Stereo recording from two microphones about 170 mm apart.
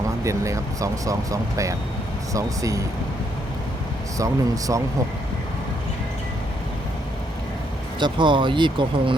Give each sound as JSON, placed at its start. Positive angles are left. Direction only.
{"t": 0.3, "sound": "speech", "side_deg": -20}
{"t": 4.2, "sound": "speech", "side_deg": -20}
{"t": 7.9, "sound": "speech", "side_deg": -30}